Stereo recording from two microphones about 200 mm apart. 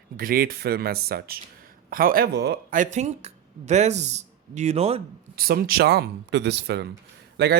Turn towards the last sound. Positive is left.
turn(degrees=-50)  # may be behind; listen again after turning